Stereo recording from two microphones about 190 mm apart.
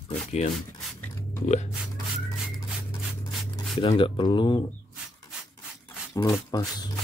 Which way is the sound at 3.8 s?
25° left (ahead or behind).